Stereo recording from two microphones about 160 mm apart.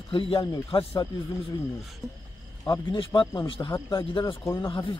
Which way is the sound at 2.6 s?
25° left (ahead or behind).